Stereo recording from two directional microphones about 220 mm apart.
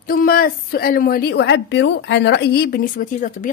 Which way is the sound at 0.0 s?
40° left (ahead or behind).